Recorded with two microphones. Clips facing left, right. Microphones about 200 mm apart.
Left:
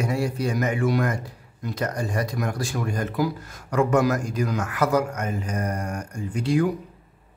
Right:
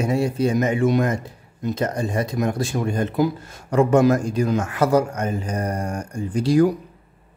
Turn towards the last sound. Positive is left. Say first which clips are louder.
# right 5 dB
turn(degrees=-35)  # may be behind; listen again after turning